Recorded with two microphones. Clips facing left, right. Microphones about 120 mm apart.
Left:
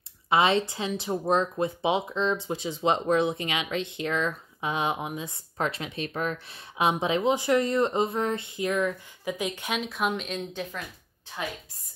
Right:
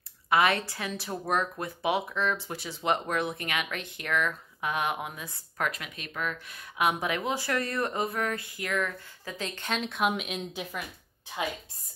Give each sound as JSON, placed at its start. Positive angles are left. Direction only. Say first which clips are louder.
{"t": 0.3, "sound": "speech", "louder": "left 2 dB", "side_deg": 25}